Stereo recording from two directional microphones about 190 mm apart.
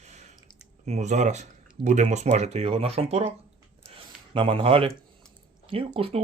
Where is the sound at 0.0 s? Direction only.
35° right (ahead or behind).